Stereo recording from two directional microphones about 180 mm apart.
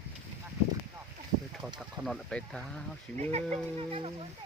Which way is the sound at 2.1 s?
5° left (ahead or behind).